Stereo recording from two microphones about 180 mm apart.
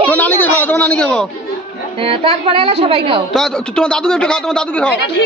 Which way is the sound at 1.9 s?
30° right (ahead or behind).